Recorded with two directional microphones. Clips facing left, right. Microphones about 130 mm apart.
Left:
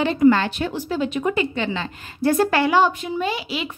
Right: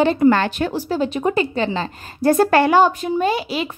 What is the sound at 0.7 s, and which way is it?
A woman's voice, 35° right (ahead or behind).